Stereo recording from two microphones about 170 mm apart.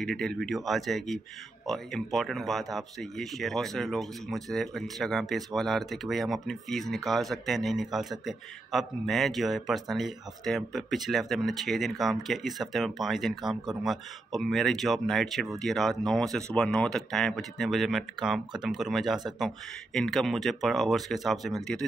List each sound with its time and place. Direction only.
0.0 s speech: 5° left (ahead or behind)